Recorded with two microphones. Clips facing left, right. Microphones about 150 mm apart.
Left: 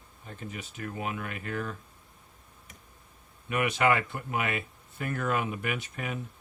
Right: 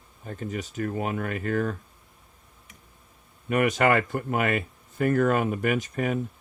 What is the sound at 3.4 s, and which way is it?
Speech, 45° right (ahead or behind).